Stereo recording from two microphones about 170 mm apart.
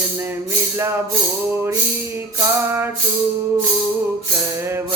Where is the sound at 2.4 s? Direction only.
15° right (ahead or behind).